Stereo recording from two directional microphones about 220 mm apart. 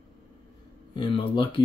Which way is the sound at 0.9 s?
25° left (ahead or behind).